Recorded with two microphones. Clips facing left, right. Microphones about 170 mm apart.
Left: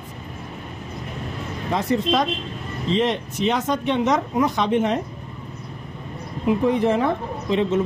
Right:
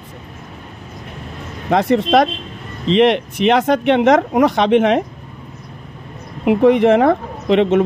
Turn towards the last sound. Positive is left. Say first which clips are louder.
# right 7 dB
turn(degrees=-75)  # may be behind; listen again after turning